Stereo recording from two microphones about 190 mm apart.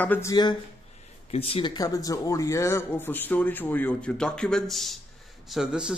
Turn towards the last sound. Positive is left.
turn(degrees=-5)  # may be behind; listen again after turning